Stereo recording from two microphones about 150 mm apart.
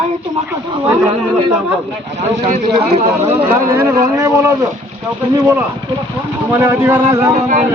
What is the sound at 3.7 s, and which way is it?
Speech, 20° right (ahead or behind).